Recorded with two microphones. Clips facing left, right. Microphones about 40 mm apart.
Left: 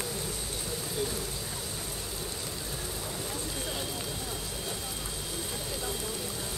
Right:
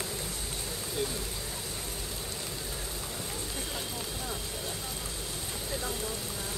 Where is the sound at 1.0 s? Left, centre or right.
Centre.